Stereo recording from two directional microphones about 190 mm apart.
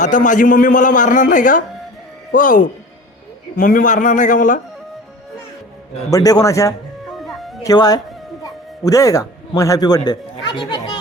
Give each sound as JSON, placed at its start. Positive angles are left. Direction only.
{"t": 0.0, "sound": "a man's voice", "side_deg": 40}
{"t": 6.1, "sound": "a man's voice", "side_deg": 20}
{"t": 7.2, "sound": "music", "side_deg": 0}
{"t": 7.6, "sound": "speech", "side_deg": 20}